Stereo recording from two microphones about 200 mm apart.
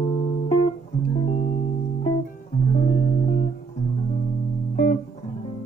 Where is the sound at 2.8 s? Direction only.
45° left (ahead or behind).